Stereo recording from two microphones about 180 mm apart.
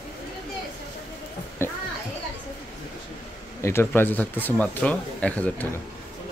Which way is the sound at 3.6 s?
15° left (ahead or behind).